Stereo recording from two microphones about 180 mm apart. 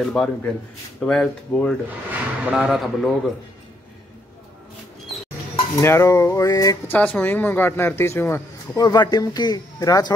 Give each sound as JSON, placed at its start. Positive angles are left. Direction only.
{"t": 0.0, "sound": "speech", "side_deg": 5}
{"t": 2.0, "sound": "speech", "side_deg": -5}
{"t": 5.8, "sound": "a man's voice", "side_deg": 15}
{"t": 7.0, "sound": "a man's voice", "side_deg": 10}